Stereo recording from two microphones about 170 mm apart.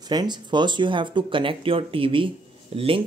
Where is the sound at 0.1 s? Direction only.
25° right (ahead or behind).